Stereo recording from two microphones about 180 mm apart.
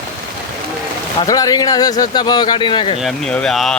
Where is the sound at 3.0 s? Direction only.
5° left (ahead or behind).